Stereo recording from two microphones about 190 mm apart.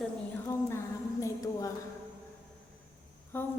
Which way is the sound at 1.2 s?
15° left (ahead or behind).